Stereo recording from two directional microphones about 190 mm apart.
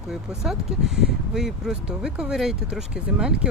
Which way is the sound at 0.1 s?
Centre (ahead or behind).